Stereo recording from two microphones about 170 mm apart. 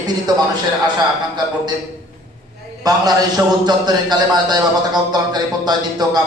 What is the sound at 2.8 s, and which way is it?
A man's voice, 20° right (ahead or behind).